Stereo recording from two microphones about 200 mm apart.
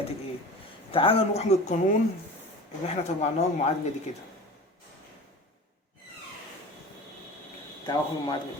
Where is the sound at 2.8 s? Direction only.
35° left (ahead or behind).